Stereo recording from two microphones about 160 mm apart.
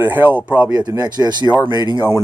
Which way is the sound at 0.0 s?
10° right (ahead or behind).